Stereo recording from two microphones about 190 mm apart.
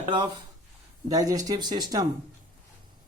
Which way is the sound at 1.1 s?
20° right (ahead or behind).